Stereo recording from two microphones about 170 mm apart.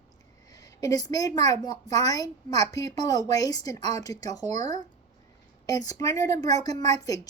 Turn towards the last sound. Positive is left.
turn(degrees=20)  # may be behind; listen again after turning